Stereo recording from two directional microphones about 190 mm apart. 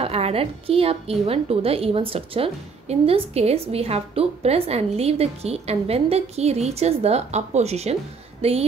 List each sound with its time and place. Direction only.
0.0 s a woman's voice: 30° right (ahead or behind)